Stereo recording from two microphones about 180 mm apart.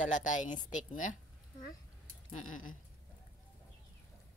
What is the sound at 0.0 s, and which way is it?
A woman's voice, 45° left (ahead or behind).